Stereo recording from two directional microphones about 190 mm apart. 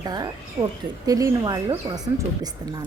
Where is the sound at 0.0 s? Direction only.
20° right (ahead or behind).